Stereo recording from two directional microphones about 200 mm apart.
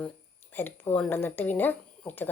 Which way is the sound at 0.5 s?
10° left (ahead or behind).